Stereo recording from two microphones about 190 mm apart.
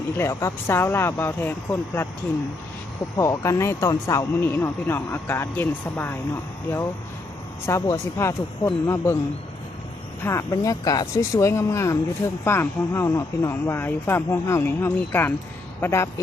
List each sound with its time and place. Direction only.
0.2 s speech: 15° left (ahead or behind)
3.2 s speech: 15° left (ahead or behind)
10.2 s speech: 15° left (ahead or behind)